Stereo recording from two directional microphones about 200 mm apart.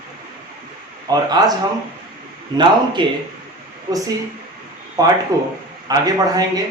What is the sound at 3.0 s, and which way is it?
Speech, 25° right (ahead or behind).